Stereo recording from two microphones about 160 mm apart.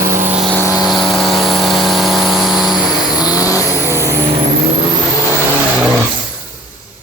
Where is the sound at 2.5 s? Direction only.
25° left (ahead or behind).